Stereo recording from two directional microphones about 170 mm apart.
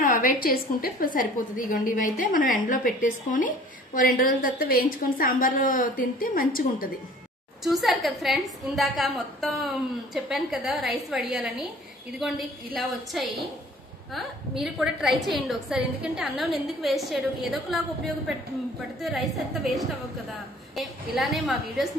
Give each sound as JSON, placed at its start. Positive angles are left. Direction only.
{"t": 0.0, "sound": "a woman's voice", "side_deg": 55}
{"t": 7.6, "sound": "a woman's voice", "side_deg": 0}
{"t": 14.6, "sound": "a woman's voice", "side_deg": 0}
{"t": 18.9, "sound": "a woman's voice", "side_deg": 0}